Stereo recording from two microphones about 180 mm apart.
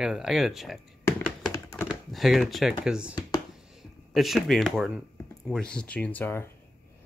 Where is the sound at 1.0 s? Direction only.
15° left (ahead or behind).